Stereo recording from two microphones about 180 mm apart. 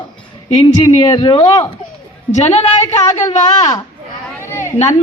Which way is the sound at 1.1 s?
25° left (ahead or behind).